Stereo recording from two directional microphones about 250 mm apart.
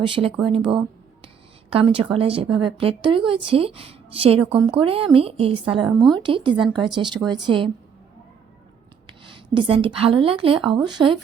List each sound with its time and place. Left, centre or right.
0.0 s a woman's voice: right
9.0 s a woman's voice: centre